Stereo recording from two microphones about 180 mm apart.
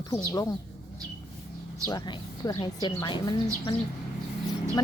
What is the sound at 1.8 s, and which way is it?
Speech, 20° left (ahead or behind).